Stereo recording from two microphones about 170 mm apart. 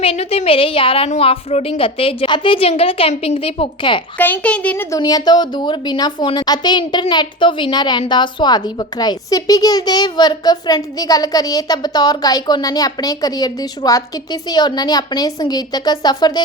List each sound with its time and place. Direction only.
0.0 s a woman's voice: 35° left (ahead or behind)
4.2 s a woman's voice: 10° left (ahead or behind)
4.9 s a woman's voice: 25° left (ahead or behind)